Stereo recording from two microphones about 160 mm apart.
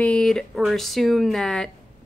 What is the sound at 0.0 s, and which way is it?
Speech, 5° left (ahead or behind).